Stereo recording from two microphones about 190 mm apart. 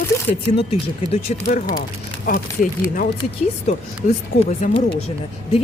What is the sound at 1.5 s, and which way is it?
Speech, 50° left (ahead or behind).